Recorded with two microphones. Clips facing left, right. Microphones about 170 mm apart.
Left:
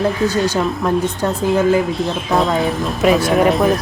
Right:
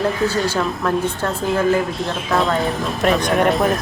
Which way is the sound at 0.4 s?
15° left (ahead or behind).